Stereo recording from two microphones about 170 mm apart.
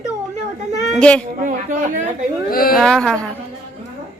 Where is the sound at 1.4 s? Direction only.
50° right (ahead or behind).